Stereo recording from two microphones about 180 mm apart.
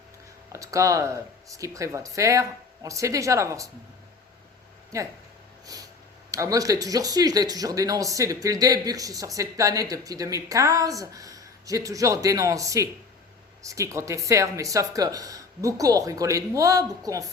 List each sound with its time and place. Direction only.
0.5 s speech: 20° right (ahead or behind)
4.9 s speech: 20° right (ahead or behind)
6.3 s speech: 20° right (ahead or behind)